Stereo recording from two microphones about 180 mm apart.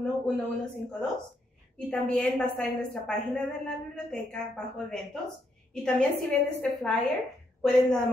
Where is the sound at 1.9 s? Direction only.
5° left (ahead or behind).